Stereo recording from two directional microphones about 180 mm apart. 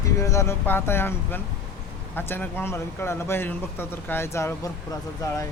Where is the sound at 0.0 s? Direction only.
15° left (ahead or behind).